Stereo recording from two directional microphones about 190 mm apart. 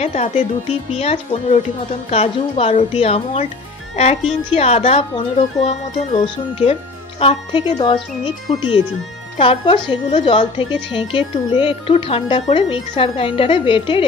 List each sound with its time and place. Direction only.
0.0 s speech: 35° left (ahead or behind)